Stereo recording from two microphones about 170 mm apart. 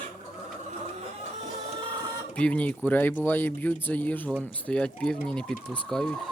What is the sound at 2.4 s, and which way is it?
Speech, 5° left (ahead or behind).